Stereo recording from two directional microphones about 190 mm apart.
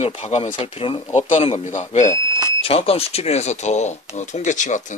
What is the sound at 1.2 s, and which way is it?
Speech, 40° left (ahead or behind).